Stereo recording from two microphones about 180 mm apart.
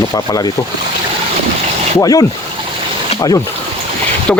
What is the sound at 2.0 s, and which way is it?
Speech, 20° left (ahead or behind).